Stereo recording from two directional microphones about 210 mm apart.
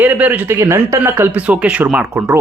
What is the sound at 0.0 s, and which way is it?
Speech, 10° right (ahead or behind).